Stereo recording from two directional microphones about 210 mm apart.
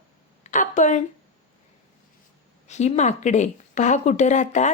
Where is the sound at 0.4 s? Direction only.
35° left (ahead or behind).